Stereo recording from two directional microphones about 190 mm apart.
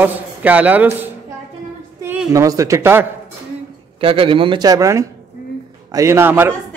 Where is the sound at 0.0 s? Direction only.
10° right (ahead or behind).